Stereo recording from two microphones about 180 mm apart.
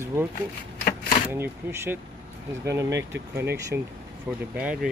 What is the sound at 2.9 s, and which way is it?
Speech, 75° right (ahead or behind).